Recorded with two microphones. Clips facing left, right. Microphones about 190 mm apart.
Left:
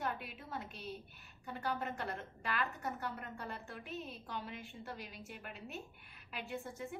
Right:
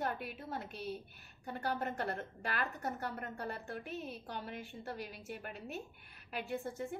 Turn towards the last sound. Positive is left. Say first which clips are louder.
# right 4 dB
turn(degrees=-40)  # may be behind; listen again after turning